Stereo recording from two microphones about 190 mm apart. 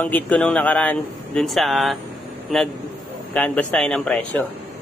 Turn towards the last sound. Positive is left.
turn(degrees=5)  # may be behind; listen again after turning